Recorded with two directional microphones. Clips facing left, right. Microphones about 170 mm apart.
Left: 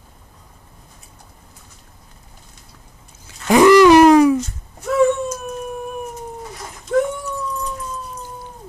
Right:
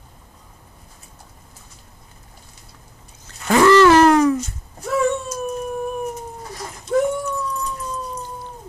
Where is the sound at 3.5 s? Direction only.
15° left (ahead or behind).